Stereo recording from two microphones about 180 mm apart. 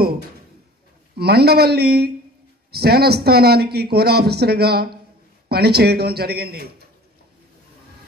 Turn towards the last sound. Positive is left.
turn(degrees=-60)  # may be behind; listen again after turning